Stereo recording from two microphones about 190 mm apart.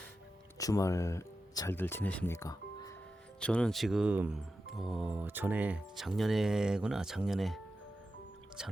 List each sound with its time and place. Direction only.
0.6 s speech: 20° left (ahead or behind)
3.4 s speech: 5° left (ahead or behind)